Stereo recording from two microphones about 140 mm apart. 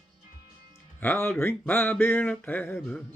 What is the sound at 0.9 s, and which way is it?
Speech, 15° left (ahead or behind).